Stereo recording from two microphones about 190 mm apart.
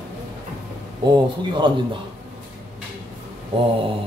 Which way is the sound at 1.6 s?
25° right (ahead or behind).